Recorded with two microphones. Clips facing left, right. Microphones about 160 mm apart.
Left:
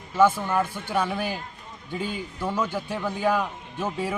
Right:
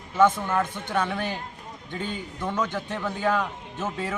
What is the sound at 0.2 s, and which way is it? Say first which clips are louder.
A man's voice: even; 10° left (ahead or behind).